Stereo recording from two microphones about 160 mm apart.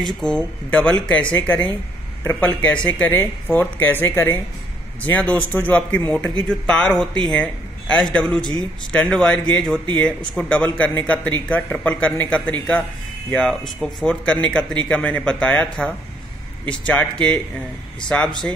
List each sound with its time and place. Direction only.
0.2 s a man's voice: 5° left (ahead or behind)